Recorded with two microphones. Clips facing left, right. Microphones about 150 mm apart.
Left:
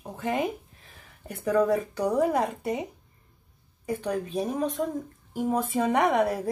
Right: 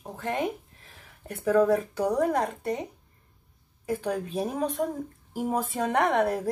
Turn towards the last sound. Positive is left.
turn(degrees=0)  # may be behind; listen again after turning